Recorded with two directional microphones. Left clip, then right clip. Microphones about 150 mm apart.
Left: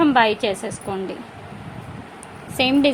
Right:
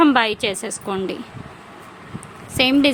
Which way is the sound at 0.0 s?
25° right (ahead or behind).